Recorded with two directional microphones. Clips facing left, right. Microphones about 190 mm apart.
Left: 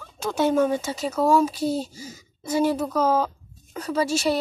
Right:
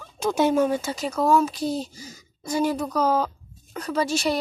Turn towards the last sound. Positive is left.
turn(degrees=5)  # may be behind; listen again after turning